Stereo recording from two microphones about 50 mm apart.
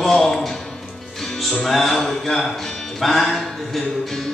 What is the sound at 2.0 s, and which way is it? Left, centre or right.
Speech, centre.